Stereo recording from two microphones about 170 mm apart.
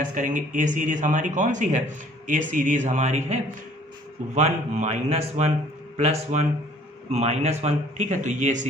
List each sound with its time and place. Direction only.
0.0 s a man's voice: 50° right (ahead or behind)